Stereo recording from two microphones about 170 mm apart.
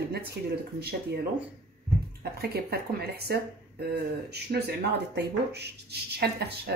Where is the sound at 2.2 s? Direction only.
65° right (ahead or behind).